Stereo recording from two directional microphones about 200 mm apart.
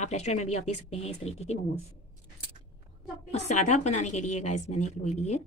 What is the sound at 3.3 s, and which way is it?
Speech, 35° left (ahead or behind).